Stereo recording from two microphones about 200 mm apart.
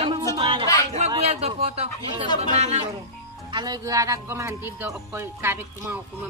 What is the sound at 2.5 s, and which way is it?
Speech, 35° right (ahead or behind).